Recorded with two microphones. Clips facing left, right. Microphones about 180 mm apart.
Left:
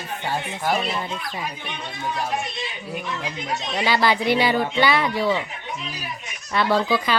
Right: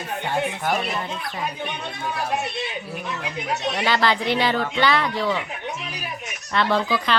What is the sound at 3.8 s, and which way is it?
Speech, 10° left (ahead or behind).